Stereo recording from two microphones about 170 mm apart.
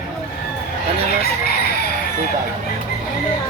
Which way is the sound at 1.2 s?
65° left (ahead or behind).